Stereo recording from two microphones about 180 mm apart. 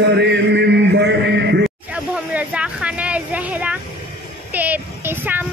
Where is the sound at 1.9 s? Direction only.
5° right (ahead or behind).